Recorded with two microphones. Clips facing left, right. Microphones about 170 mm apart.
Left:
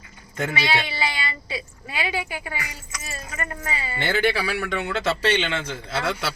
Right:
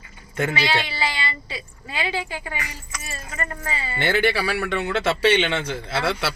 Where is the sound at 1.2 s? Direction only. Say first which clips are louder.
Even; 30° right (ahead or behind).